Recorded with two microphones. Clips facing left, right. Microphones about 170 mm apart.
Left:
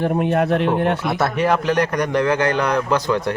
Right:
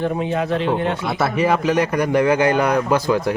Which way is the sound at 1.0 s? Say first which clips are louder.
Even; centre (ahead or behind).